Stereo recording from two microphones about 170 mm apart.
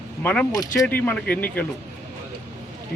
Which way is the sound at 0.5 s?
20° left (ahead or behind).